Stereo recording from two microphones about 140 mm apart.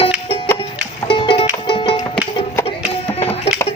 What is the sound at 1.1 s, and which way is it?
Music, 35° left (ahead or behind).